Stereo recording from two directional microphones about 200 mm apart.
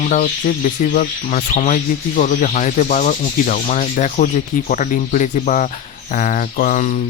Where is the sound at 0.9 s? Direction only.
40° left (ahead or behind).